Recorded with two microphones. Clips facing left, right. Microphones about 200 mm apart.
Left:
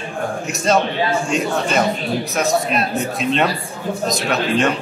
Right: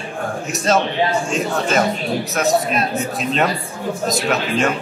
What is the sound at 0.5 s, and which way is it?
A man's voice, centre (ahead or behind).